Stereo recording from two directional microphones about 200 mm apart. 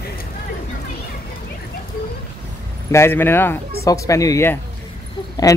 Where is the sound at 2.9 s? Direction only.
10° left (ahead or behind).